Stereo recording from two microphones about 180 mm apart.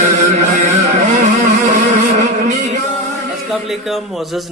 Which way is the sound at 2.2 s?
40° right (ahead or behind).